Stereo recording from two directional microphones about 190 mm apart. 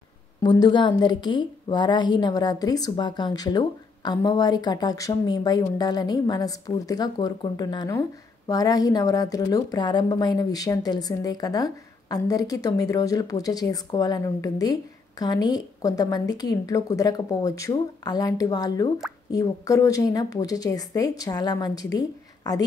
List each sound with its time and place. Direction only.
0.4 s a woman's voice: 20° left (ahead or behind)